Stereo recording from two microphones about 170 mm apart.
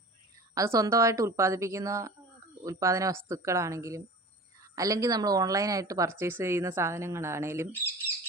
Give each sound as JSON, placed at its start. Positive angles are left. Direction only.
{"t": 0.5, "sound": "a woman's voice", "side_deg": -20}